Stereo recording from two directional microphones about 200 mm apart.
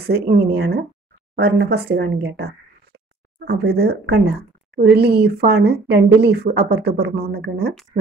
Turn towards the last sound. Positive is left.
turn(degrees=-55)  # may be behind; listen again after turning